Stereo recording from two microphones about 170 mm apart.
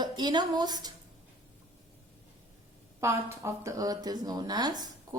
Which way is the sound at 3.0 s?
15° right (ahead or behind).